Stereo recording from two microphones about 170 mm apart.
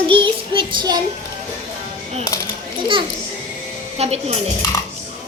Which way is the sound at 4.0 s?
40° right (ahead or behind).